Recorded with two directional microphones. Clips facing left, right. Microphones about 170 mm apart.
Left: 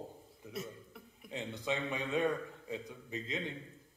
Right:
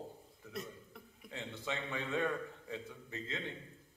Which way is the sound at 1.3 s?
15° left (ahead or behind).